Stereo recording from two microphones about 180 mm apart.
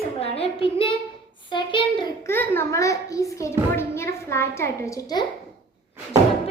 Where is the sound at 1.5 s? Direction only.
25° left (ahead or behind).